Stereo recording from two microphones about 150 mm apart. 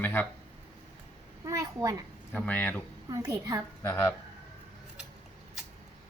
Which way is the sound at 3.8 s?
20° left (ahead or behind).